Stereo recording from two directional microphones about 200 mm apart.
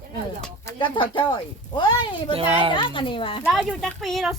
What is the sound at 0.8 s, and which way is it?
Speech, 25° left (ahead or behind).